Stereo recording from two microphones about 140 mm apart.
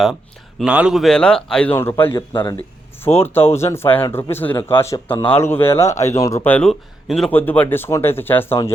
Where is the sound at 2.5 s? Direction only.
15° left (ahead or behind).